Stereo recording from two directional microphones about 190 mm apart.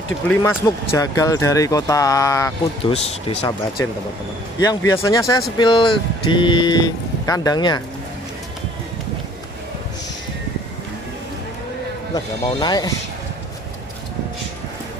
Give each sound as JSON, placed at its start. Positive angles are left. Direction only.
{"t": 0.3, "sound": "speech", "side_deg": 15}
{"t": 2.8, "sound": "speech", "side_deg": 35}
{"t": 3.4, "sound": "speech", "side_deg": 20}
{"t": 12.1, "sound": "speech", "side_deg": 20}